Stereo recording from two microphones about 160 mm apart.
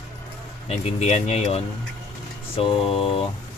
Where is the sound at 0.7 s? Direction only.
40° left (ahead or behind).